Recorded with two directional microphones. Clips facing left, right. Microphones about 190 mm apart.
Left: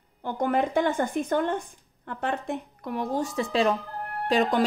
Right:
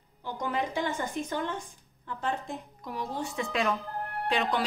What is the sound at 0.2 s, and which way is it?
Speech, 55° left (ahead or behind).